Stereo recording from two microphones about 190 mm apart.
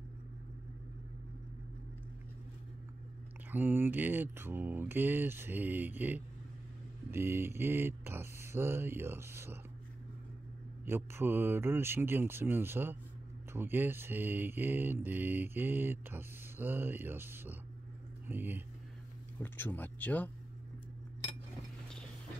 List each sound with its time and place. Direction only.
3.5 s speech: 10° right (ahead or behind)
10.9 s speech: 10° right (ahead or behind)
19.4 s speech: 10° left (ahead or behind)